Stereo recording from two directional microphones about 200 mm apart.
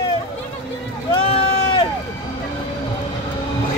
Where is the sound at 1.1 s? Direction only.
25° left (ahead or behind).